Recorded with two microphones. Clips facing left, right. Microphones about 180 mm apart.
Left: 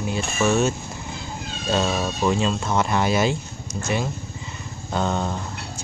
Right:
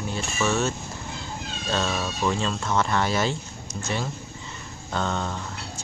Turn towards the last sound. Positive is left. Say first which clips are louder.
# left 4 dB
turn(degrees=10)  # may be behind; listen again after turning